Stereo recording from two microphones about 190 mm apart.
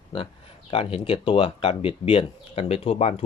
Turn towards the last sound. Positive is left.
turn(degrees=30)  # may be behind; listen again after turning